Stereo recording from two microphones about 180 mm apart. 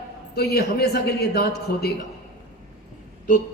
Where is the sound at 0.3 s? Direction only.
60° left (ahead or behind).